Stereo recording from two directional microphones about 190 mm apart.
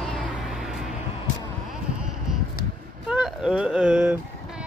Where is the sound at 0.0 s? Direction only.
Centre (ahead or behind).